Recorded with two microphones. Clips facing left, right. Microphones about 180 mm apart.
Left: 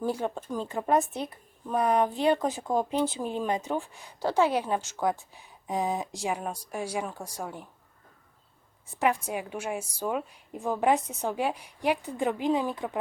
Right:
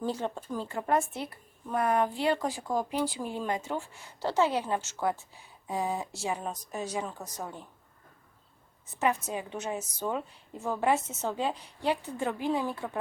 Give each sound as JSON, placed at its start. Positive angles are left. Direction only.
{"t": 0.0, "sound": "speech", "side_deg": 10}
{"t": 9.0, "sound": "speech", "side_deg": 15}